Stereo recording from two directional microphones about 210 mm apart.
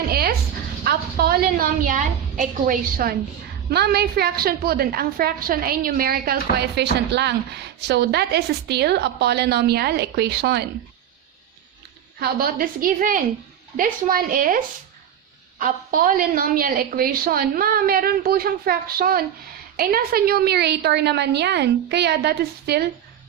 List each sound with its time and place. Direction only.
0.1 s a sound: 45° right (ahead or behind)
0.9 s a woman's voice: 45° right (ahead or behind)
12.2 s a woman's voice: 45° right (ahead or behind)